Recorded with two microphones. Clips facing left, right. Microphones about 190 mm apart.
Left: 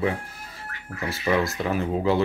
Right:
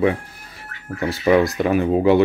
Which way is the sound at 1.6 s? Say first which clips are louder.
Right 7 dB; 65° right (ahead or behind).